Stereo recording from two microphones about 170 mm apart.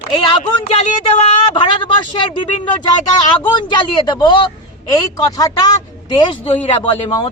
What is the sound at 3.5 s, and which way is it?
A man's voice, 25° left (ahead or behind).